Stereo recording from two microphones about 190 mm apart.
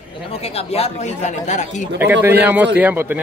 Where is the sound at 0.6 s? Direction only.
30° left (ahead or behind).